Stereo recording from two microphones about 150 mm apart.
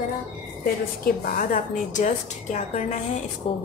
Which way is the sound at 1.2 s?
65° left (ahead or behind).